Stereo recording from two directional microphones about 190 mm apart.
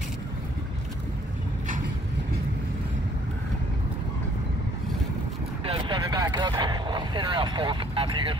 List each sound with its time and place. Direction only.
5.7 s vehicle: 25° right (ahead or behind)